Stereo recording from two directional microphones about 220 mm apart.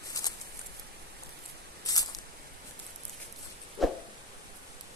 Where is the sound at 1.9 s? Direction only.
15° left (ahead or behind).